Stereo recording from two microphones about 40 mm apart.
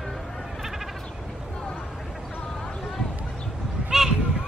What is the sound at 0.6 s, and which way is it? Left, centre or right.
Sheep, centre.